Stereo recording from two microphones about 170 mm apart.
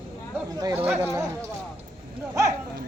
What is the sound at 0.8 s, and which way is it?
Speech, 5° right (ahead or behind).